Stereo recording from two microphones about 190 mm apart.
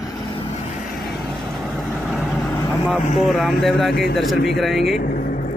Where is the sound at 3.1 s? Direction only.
Centre (ahead or behind).